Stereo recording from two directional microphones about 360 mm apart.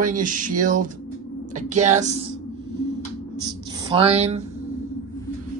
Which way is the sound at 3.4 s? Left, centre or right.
Centre.